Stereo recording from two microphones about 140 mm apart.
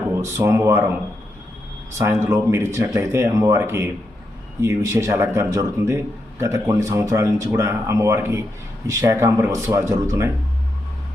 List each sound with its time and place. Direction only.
0.2 s speech: 20° right (ahead or behind)
2.0 s speech: 20° right (ahead or behind)